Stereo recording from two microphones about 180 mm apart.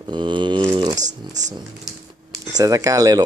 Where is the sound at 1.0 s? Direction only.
40° right (ahead or behind).